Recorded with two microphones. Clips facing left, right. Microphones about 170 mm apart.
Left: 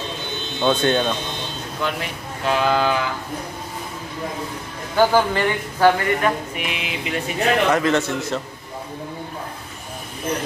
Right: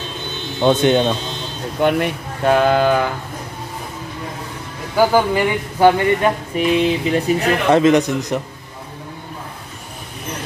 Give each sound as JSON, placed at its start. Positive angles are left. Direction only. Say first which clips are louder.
{"t": 0.6, "sound": "speech", "louder": "right 5 dB", "side_deg": -15}
{"t": 1.8, "sound": "speech", "louder": "right 10 dB", "side_deg": -55}
{"t": 4.9, "sound": "speech", "louder": "right 2 dB", "side_deg": -10}
{"t": 6.5, "sound": "mantra", "louder": "right 12 dB", "side_deg": -35}
{"t": 7.7, "sound": "speech", "louder": "right 6 dB", "side_deg": -20}